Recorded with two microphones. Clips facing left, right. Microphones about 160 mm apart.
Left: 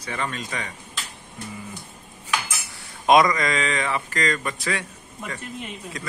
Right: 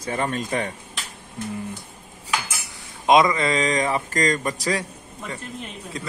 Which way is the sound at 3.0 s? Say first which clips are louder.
Even; 20° right (ahead or behind).